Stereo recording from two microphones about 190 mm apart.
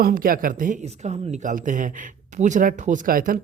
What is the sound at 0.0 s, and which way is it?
Speech, 50° right (ahead or behind).